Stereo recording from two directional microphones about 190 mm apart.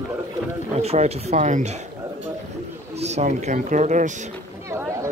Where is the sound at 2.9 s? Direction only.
35° right (ahead or behind).